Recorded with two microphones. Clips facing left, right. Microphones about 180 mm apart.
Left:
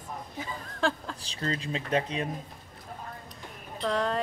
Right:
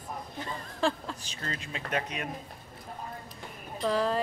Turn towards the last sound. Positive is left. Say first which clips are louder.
# right 1 dB
turn(degrees=0)  # may be behind; listen again after turning